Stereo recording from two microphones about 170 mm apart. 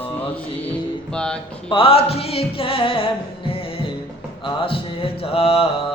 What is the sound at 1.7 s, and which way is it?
Music, 35° left (ahead or behind).